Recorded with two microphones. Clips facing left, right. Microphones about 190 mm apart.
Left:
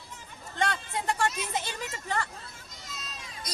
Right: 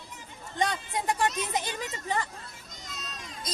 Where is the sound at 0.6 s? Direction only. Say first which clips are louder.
Right 1 dB; 15° right (ahead or behind).